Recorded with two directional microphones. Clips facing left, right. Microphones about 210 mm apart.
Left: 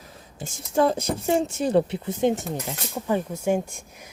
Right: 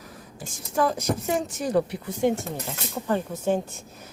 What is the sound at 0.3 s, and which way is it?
A woman's voice, 25° left (ahead or behind).